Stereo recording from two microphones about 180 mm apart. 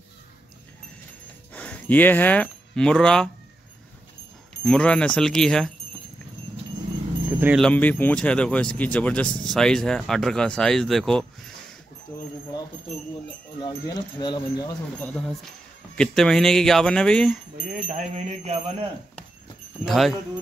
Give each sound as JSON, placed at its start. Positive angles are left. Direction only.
{"t": 1.5, "sound": "speech", "side_deg": 5}
{"t": 4.6, "sound": "speech", "side_deg": 5}
{"t": 7.3, "sound": "speech", "side_deg": -10}
{"t": 7.6, "sound": "speech", "side_deg": 10}
{"t": 13.6, "sound": "speech", "side_deg": 20}
{"t": 15.0, "sound": "speech", "side_deg": 5}
{"t": 17.7, "sound": "jingle bell", "side_deg": -45}
{"t": 19.8, "sound": "speech", "side_deg": 0}